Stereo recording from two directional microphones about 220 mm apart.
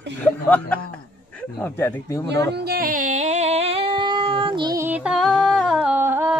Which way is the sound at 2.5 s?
45° right (ahead or behind).